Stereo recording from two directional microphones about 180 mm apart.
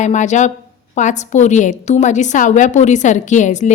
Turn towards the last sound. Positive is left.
turn(degrees=45)  # may be behind; listen again after turning